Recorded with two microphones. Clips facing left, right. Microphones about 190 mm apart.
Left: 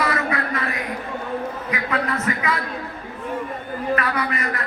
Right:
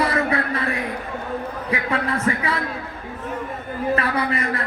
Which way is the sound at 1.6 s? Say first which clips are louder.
Right 3 dB; 30° right (ahead or behind).